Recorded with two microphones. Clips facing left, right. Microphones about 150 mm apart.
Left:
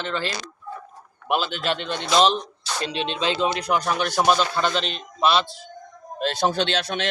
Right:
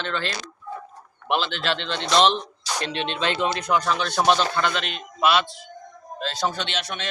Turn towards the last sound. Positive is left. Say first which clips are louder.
# left 6 dB
turn(degrees=90)